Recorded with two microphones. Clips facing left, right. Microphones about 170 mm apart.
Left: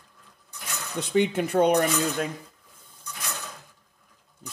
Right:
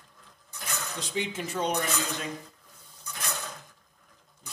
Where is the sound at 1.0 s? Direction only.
60° left (ahead or behind).